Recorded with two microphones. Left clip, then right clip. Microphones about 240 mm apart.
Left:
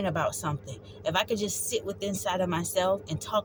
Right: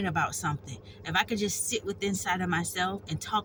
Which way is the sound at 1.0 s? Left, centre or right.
Left.